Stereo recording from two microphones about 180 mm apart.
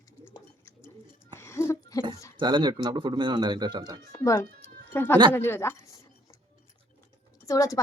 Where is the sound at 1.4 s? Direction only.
15° left (ahead or behind).